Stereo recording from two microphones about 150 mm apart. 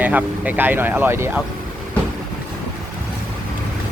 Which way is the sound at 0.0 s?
10° right (ahead or behind).